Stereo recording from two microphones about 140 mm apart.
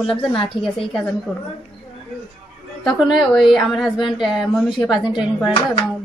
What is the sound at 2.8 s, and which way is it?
A woman's voice, centre (ahead or behind).